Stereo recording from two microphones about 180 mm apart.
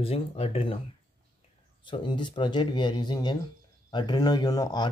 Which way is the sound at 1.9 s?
25° left (ahead or behind).